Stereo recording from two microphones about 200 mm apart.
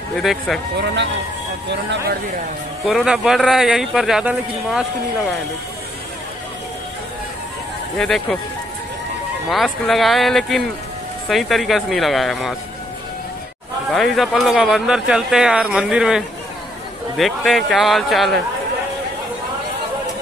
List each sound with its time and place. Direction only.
0.1 s speech: centre (ahead or behind)
1.7 s speech: 60° right (ahead or behind)
2.8 s speech: centre (ahead or behind)
8.0 s speech: centre (ahead or behind)
9.5 s speech: centre (ahead or behind)
13.9 s speech: centre (ahead or behind)